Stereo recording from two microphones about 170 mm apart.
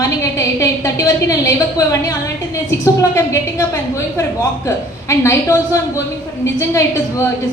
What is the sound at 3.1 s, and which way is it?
Speech, 20° left (ahead or behind).